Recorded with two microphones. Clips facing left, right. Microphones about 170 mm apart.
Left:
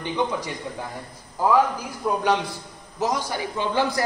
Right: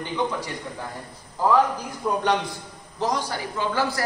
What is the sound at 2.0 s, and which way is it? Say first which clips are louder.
A man's voice: left 1 dB; 5° left (ahead or behind).